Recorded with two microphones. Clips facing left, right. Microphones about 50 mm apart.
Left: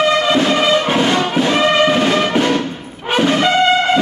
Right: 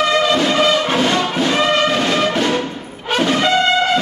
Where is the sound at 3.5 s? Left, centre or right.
Left.